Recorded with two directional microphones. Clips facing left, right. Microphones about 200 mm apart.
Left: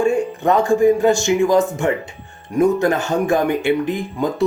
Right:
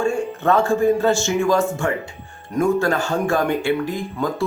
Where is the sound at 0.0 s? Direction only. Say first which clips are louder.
Left 3 dB; 15° left (ahead or behind).